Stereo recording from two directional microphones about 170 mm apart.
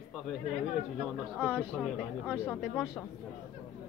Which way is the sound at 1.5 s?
5° right (ahead or behind).